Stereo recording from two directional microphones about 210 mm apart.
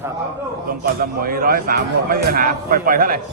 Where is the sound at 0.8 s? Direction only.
45° right (ahead or behind).